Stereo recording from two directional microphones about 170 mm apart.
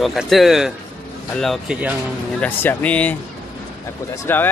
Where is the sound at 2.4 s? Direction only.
10° left (ahead or behind).